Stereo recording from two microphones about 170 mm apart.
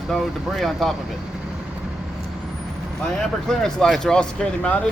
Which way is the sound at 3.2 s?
5° left (ahead or behind).